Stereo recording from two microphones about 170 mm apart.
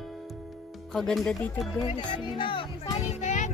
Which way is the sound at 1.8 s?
30° left (ahead or behind).